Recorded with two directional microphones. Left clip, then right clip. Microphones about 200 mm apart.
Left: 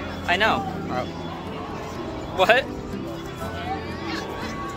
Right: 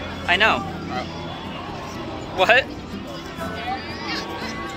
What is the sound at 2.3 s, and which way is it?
Speech, centre (ahead or behind).